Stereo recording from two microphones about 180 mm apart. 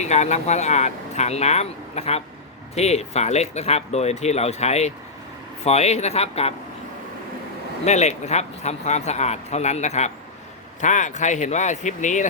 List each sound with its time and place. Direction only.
0.0 s speech: 40° left (ahead or behind)
7.9 s speech: 40° left (ahead or behind)